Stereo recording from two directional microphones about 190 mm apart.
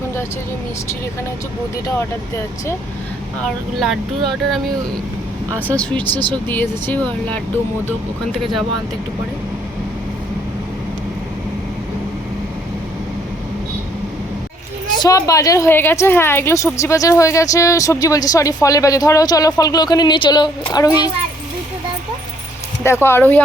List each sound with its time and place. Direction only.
5.6 s speech: 5° left (ahead or behind)
6.0 s speech: 25° right (ahead or behind)
6.3 s a woman's voice: 10° left (ahead or behind)
14.9 s a woman's voice: 20° left (ahead or behind)
22.8 s a woman's voice: 15° left (ahead or behind)